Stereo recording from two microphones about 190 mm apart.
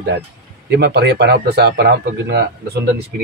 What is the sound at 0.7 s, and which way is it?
Speech, 60° right (ahead or behind).